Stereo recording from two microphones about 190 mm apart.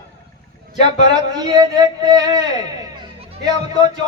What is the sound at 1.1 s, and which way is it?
Speech, 20° right (ahead or behind).